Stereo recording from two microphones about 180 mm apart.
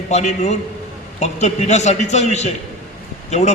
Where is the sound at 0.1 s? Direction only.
40° left (ahead or behind).